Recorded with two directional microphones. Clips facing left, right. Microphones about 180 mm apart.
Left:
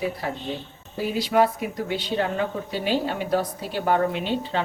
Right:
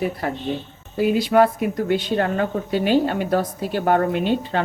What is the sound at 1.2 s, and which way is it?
A woman's voice, 50° right (ahead or behind).